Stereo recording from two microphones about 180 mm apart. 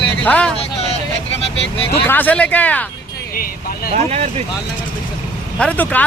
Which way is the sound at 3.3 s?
50° left (ahead or behind).